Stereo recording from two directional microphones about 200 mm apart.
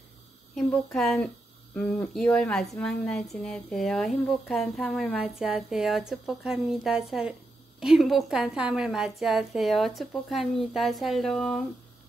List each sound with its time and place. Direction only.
0.6 s speech: 5° left (ahead or behind)